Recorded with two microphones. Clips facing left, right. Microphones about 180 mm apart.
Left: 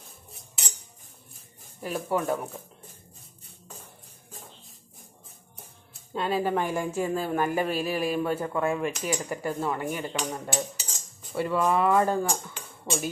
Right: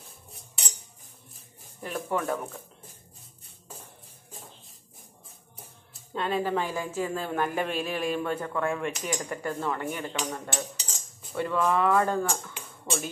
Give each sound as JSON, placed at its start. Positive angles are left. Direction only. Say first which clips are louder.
{"t": 1.8, "sound": "speech", "louder": "left 2 dB", "side_deg": 5}
{"t": 3.4, "sound": "music", "louder": "even", "side_deg": 0}
{"t": 6.1, "sound": "speech", "louder": "left 1 dB", "side_deg": 5}
{"t": 10.5, "sound": "cutlery", "louder": "left 3 dB", "side_deg": 5}